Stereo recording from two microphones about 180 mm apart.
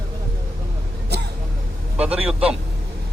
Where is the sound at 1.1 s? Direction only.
65° right (ahead or behind).